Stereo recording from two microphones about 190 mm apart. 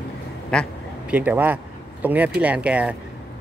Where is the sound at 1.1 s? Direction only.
10° right (ahead or behind).